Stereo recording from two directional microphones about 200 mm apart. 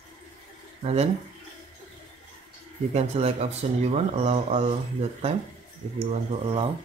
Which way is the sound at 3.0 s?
30° right (ahead or behind).